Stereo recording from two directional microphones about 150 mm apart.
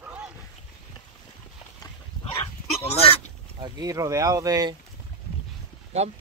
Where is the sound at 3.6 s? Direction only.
25° right (ahead or behind).